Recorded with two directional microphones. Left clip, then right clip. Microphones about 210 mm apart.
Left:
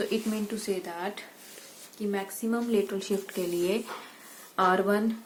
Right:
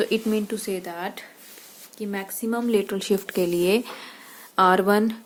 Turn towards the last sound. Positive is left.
turn(degrees=-50)  # may be behind; listen again after turning